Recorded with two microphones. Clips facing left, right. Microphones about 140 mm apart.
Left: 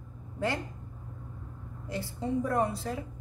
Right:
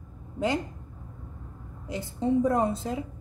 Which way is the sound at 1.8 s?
20° right (ahead or behind).